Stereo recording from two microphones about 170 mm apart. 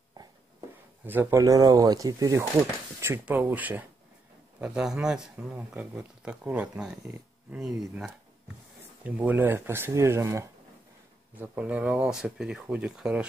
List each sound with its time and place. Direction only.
1.0 s speech: 10° right (ahead or behind)